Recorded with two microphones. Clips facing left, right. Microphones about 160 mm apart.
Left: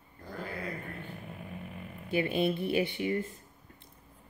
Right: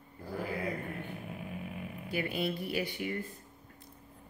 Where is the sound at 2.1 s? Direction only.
25° left (ahead or behind).